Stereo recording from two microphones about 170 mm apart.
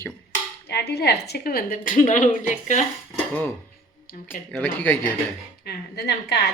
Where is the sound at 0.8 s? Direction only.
75° left (ahead or behind); by 2.8 s 45° left (ahead or behind).